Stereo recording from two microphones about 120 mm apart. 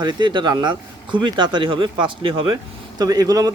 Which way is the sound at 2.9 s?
30° right (ahead or behind).